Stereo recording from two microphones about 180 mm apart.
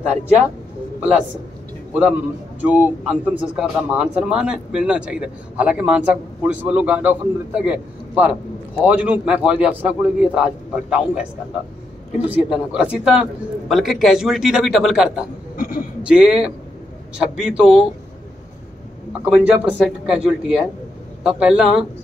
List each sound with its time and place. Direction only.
2.0 s a man's voice: 5° right (ahead or behind)
12.3 s a man's voice: 5° right (ahead or behind)
15.5 s a sound: 50° left (ahead or behind)
16.0 s a man's voice: 5° right (ahead or behind)
19.2 s a man's voice: 5° right (ahead or behind)